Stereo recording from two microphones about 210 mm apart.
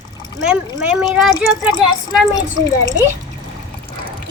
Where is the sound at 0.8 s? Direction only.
5° right (ahead or behind).